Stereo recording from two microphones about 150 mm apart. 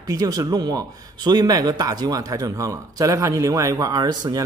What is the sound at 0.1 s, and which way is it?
Speech, 25° right (ahead or behind).